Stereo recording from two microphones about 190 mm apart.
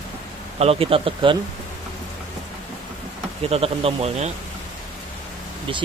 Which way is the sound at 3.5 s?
30° right (ahead or behind).